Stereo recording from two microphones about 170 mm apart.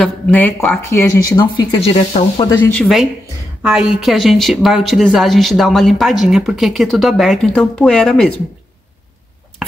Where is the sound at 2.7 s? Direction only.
5° left (ahead or behind).